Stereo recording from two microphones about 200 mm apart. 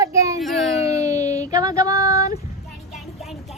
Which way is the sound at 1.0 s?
15° right (ahead or behind).